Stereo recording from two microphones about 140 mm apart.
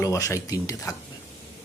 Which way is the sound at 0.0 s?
20° left (ahead or behind).